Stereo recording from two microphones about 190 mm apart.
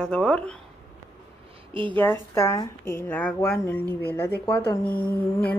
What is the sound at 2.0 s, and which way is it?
A woman's voice, 10° left (ahead or behind).